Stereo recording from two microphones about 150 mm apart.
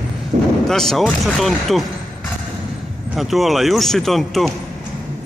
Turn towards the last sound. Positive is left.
turn(degrees=0)  # may be behind; listen again after turning